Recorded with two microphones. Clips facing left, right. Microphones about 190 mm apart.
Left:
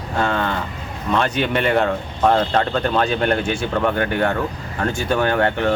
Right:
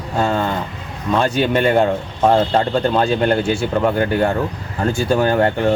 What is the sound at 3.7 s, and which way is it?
Speech, 10° right (ahead or behind).